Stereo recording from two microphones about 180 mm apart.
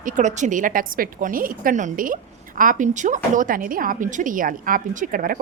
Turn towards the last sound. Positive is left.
turn(degrees=-50)  # may be behind; listen again after turning